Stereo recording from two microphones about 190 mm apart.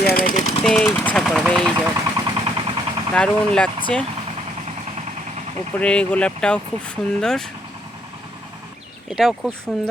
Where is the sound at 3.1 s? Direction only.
5° left (ahead or behind).